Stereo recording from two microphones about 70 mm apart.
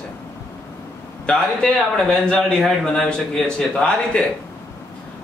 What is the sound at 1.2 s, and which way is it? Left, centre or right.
A man's voice, centre.